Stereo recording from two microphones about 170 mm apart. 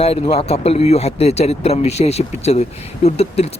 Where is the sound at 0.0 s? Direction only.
35° left (ahead or behind).